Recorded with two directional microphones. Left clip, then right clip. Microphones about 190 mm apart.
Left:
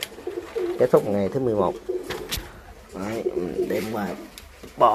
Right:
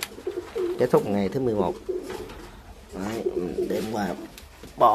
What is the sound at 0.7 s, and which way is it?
Speech, 15° right (ahead or behind).